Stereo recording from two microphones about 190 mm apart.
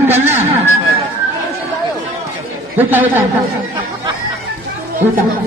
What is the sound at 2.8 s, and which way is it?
Speech, 10° right (ahead or behind).